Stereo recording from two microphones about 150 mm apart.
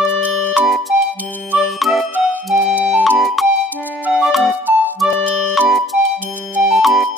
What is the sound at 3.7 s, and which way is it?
Clarinet, 10° left (ahead or behind).